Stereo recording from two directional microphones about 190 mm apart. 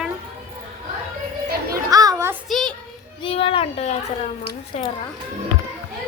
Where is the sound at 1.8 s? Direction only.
20° right (ahead or behind).